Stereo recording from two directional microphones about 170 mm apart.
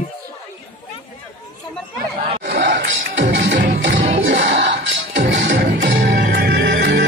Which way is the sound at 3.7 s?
90° right.